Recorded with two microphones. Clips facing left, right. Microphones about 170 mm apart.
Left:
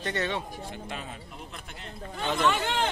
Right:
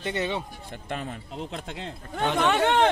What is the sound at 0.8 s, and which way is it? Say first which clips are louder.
Speech: right 5 dB; 50° right (ahead or behind).